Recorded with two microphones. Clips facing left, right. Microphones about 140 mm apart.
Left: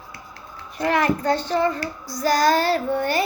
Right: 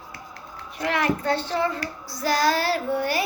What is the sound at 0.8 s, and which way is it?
Speech, 40° left (ahead or behind).